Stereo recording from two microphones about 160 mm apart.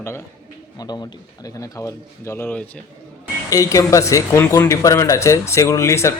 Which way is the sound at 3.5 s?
20° left (ahead or behind).